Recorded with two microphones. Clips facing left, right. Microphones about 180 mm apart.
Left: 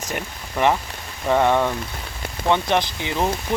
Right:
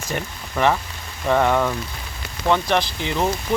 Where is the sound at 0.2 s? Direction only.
10° left (ahead or behind).